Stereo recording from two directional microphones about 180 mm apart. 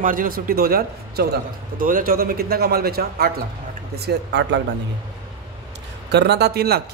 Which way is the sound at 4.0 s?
70° right (ahead or behind).